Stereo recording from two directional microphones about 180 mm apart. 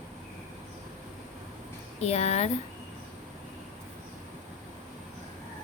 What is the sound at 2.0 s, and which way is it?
Speech, 35° left (ahead or behind).